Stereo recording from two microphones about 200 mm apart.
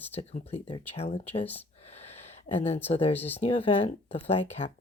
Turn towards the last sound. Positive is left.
turn(degrees=30)  # may be behind; listen again after turning